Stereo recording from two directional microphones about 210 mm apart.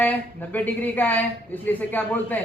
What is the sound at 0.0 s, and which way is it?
A man's voice, 10° left (ahead or behind).